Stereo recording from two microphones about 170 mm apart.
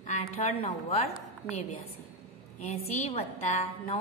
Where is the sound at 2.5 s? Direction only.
40° left (ahead or behind).